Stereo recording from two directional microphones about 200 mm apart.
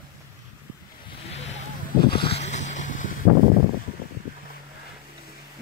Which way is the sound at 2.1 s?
30° left (ahead or behind).